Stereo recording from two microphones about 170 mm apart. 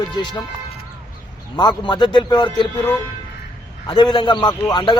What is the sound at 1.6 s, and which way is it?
A man's voice, 25° left (ahead or behind).